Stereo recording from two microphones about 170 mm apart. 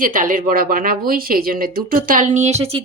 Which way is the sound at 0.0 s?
50° right (ahead or behind).